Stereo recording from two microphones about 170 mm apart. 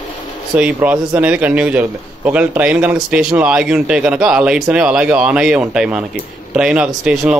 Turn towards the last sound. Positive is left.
turn(degrees=-5)  # may be behind; listen again after turning